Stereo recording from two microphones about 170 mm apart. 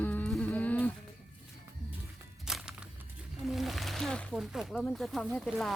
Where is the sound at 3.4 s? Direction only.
Centre (ahead or behind).